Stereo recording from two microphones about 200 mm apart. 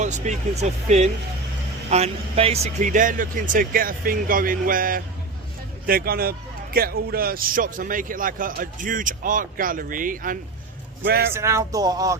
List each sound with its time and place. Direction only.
0.0 s a man's voice: 35° right (ahead or behind); by 11.3 s 50° right (ahead or behind)
11.3 s speech: 15° right (ahead or behind)